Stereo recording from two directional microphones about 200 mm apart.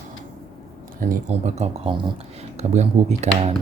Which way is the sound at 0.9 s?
45° right (ahead or behind).